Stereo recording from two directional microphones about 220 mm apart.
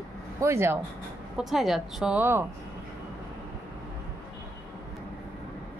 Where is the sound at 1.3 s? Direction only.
Centre (ahead or behind).